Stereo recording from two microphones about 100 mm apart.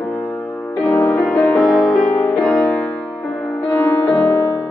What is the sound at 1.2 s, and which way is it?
Music, 5° left (ahead or behind).